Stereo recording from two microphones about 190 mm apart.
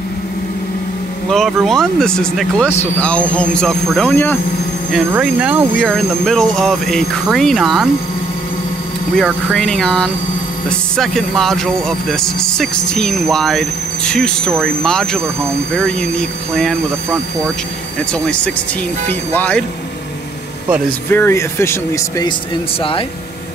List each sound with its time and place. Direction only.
1.3 s speech: centre (ahead or behind)
4.9 s speech: 5° right (ahead or behind)
9.1 s speech: centre (ahead or behind)
18.2 s speech: 5° left (ahead or behind)
21.1 s speech: 15° left (ahead or behind)